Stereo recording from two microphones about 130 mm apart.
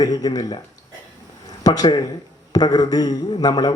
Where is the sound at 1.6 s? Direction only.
30° left (ahead or behind).